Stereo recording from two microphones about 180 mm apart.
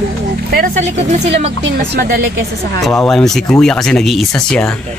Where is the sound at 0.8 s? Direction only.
40° right (ahead or behind).